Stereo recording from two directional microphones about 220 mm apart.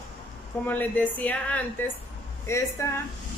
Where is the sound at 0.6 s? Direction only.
5° left (ahead or behind).